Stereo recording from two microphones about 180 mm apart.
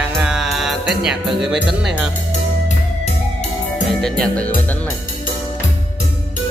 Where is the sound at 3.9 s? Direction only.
5° left (ahead or behind).